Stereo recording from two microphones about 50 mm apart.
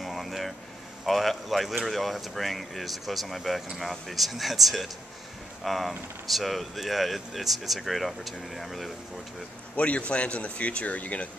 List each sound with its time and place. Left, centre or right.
0.0 s air conditioning: centre
1.0 s speech: centre
9.8 s speech: left